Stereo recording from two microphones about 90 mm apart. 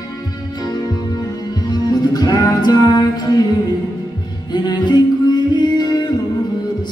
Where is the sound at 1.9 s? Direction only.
50° left (ahead or behind).